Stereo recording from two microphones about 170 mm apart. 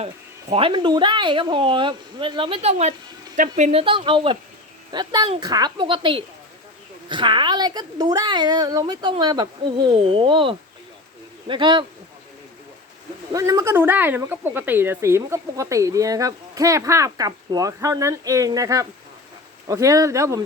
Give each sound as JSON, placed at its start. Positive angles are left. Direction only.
{"t": 0.5, "sound": "speech", "side_deg": -30}
{"t": 3.3, "sound": "speech", "side_deg": -50}
{"t": 3.7, "sound": "speech", "side_deg": -35}
{"t": 13.3, "sound": "speech", "side_deg": -20}